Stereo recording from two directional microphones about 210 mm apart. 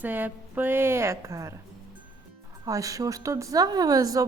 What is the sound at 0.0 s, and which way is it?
Speech, 10° right (ahead or behind).